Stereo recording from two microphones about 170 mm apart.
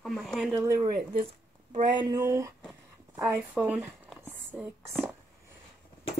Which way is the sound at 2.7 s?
10° right (ahead or behind).